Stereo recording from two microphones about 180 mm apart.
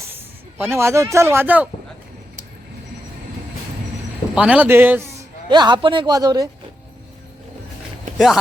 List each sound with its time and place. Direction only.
0.6 s speech: 15° right (ahead or behind)
4.4 s speech: 5° right (ahead or behind)
5.5 s a man's voice: 25° right (ahead or behind)